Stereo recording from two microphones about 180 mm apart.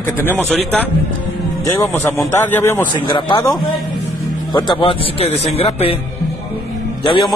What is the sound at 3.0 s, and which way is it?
Speech, 25° left (ahead or behind).